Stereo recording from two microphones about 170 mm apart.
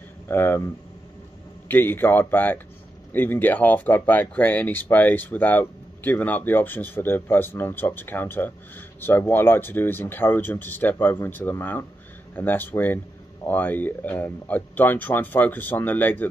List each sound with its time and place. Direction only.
0.3 s speech: 15° left (ahead or behind)
1.7 s speech: 10° left (ahead or behind)